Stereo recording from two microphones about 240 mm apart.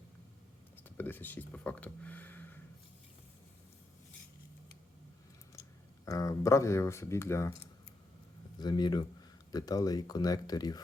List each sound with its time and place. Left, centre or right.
0.9 s speech: centre
6.1 s speech: centre
8.5 s speech: centre